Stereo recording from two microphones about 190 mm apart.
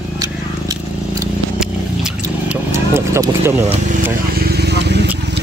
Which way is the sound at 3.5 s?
35° right (ahead or behind).